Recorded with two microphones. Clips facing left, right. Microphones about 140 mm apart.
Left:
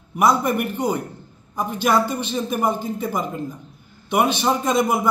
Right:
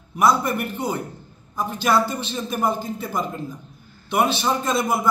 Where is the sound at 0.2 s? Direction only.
10° left (ahead or behind).